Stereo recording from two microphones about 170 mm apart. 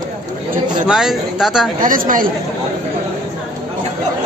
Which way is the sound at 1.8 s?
55° right (ahead or behind).